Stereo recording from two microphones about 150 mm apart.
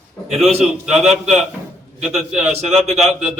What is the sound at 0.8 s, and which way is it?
A man's voice, 5° right (ahead or behind).